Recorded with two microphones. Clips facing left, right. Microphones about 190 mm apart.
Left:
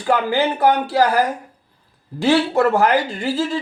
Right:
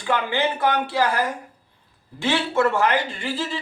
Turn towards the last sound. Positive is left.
turn(degrees=40)  # may be behind; listen again after turning